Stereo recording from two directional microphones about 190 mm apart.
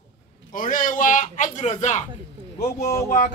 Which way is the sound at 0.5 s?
45° left (ahead or behind).